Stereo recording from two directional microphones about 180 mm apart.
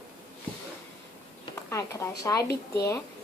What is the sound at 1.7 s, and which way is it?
Speech, 15° left (ahead or behind).